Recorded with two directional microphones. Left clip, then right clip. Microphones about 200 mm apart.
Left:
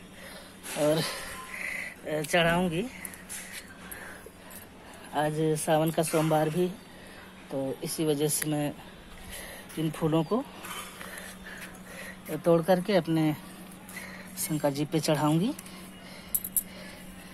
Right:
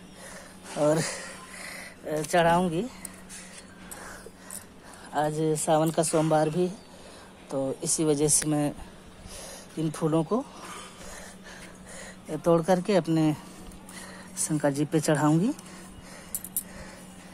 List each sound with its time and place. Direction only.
0.7 s speech: 20° right (ahead or behind)
2.0 s speech: 10° right (ahead or behind)
5.1 s speech: 5° right (ahead or behind)
9.8 s speech: 10° right (ahead or behind)
12.4 s speech: 10° right (ahead or behind)
13.9 s a sound: 10° right (ahead or behind)
14.9 s speech: 15° right (ahead or behind)